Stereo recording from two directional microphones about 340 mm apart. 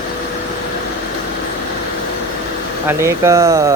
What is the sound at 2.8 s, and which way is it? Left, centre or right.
Speech, centre.